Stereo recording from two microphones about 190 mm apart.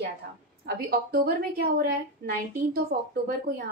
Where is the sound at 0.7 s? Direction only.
50° right (ahead or behind).